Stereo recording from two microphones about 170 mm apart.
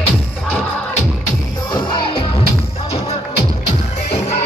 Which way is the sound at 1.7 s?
25° left (ahead or behind).